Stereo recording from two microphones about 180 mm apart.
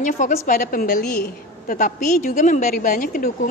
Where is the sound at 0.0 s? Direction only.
45° left (ahead or behind).